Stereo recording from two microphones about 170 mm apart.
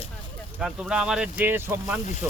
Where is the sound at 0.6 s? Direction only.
5° right (ahead or behind).